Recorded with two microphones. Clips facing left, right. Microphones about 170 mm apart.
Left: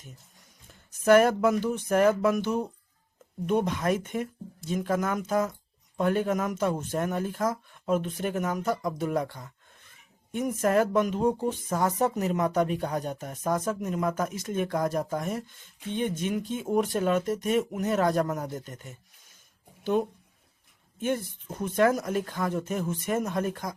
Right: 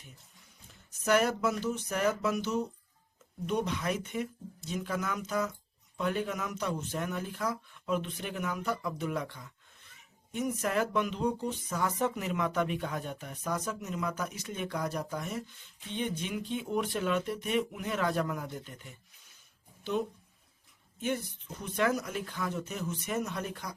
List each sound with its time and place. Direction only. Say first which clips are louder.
1.0 s speech: left 8 dB; 50° left (ahead or behind)